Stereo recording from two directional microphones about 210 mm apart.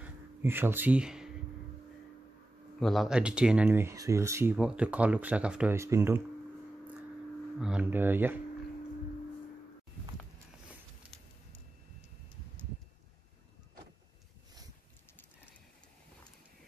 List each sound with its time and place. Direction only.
0.0 s a sound: 10° right (ahead or behind)
2.8 s speech: centre (ahead or behind)
7.5 s speech: 5° right (ahead or behind)